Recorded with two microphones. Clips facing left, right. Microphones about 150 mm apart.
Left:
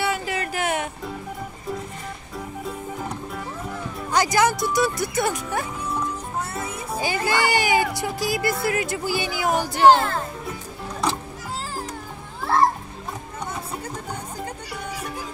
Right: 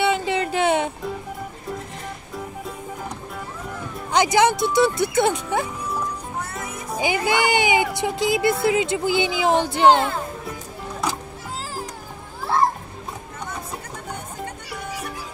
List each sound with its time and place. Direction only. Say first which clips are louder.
0.0 s a sound: right 4 dB; 25° right (ahead or behind)
2.3 s music: left 2 dB; centre (ahead or behind)
4.1 s speech: right 2 dB; 20° right (ahead or behind)
7.0 s speech: right 2 dB; 15° right (ahead or behind)
9.9 s speech: right 1 dB; 5° right (ahead or behind)